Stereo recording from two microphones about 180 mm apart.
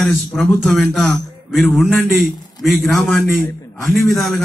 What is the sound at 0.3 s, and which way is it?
A man's voice, 10° left (ahead or behind).